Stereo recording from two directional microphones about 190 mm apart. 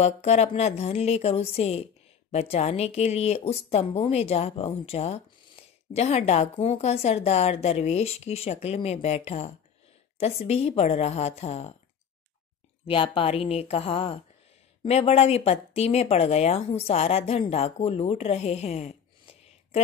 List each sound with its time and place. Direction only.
0.0 s speech: 35° left (ahead or behind)
12.8 s a woman's voice: 25° left (ahead or behind)